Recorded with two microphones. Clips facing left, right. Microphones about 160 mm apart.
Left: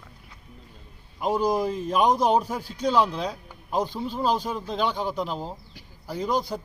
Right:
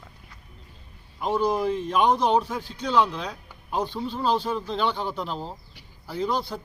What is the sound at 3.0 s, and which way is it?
Speech, 35° left (ahead or behind).